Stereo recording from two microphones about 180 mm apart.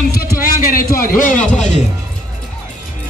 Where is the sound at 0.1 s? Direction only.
55° left (ahead or behind).